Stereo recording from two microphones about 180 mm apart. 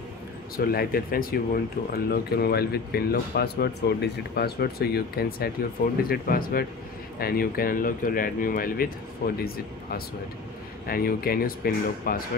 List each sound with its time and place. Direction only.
0.6 s speech: 55° left (ahead or behind)
10.9 s speech: 55° left (ahead or behind)